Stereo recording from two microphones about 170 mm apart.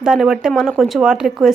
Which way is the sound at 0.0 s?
5° right (ahead or behind).